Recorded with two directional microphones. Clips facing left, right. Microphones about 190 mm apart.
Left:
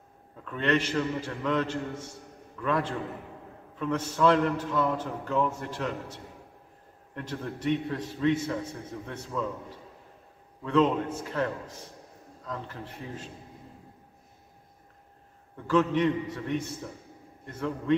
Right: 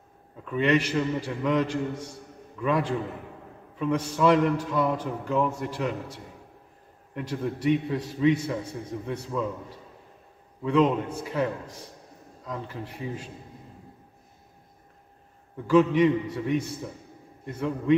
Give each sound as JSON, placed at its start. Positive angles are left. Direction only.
{"t": 0.4, "sound": "a man's voice", "side_deg": -10}
{"t": 10.6, "sound": "a man's voice", "side_deg": -15}
{"t": 15.5, "sound": "a man's voice", "side_deg": -10}